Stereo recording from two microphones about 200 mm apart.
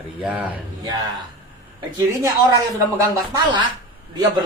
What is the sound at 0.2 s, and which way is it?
Speech, 5° right (ahead or behind).